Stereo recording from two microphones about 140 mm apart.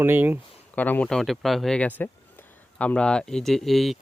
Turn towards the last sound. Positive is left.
turn(degrees=0)  # may be behind; listen again after turning